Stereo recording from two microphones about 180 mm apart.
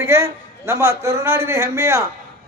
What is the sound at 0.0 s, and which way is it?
A man's voice, 15° right (ahead or behind).